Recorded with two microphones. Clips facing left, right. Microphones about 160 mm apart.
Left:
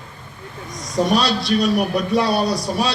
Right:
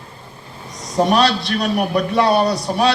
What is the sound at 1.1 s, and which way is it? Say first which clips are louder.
A man's voice: right 1 dB; 65° right (ahead or behind).